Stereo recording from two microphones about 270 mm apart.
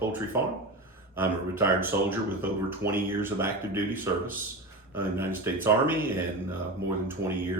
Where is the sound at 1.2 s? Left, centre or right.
Centre.